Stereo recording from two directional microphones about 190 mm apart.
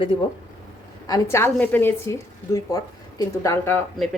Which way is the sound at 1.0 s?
15° left (ahead or behind).